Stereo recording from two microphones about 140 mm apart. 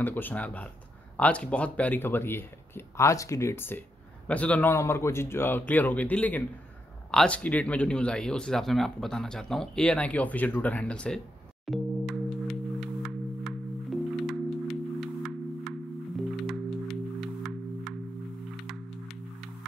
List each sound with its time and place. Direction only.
0.0 s speech: 15° left (ahead or behind)
11.6 s singing bowl: centre (ahead or behind)
16.2 s music: centre (ahead or behind)